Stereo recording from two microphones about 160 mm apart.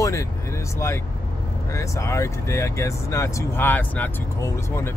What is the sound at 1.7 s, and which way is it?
Speech, 20° left (ahead or behind).